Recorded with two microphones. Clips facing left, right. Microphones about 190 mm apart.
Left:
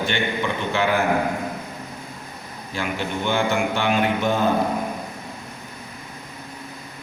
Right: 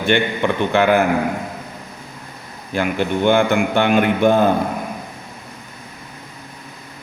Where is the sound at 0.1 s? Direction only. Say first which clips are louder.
Right 6 dB; 60° right (ahead or behind).